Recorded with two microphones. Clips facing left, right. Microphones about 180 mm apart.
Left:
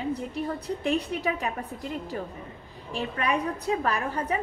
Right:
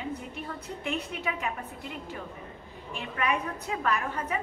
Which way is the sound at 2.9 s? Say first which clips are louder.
Left 3 dB; 35° left (ahead or behind).